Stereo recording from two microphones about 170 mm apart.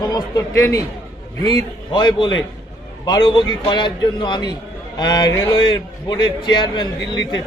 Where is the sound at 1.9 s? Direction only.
25° left (ahead or behind).